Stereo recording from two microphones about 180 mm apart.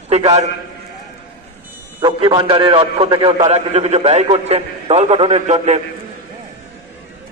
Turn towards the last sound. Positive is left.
turn(degrees=-40)  # may be behind; listen again after turning